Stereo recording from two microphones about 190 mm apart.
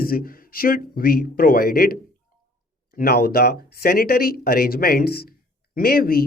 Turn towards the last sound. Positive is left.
turn(degrees=50)  # may be behind; listen again after turning